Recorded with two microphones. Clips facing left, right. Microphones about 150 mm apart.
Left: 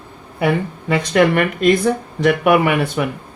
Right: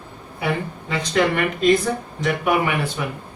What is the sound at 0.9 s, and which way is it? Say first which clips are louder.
Speech: left 6 dB; 60° left (ahead or behind).